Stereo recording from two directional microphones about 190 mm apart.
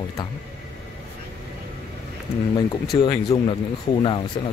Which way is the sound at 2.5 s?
25° left (ahead or behind).